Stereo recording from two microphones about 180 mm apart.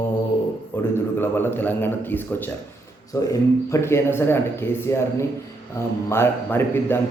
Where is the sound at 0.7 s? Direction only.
10° left (ahead or behind).